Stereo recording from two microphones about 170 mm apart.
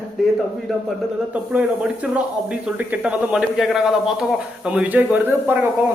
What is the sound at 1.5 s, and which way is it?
Speech, 5° right (ahead or behind).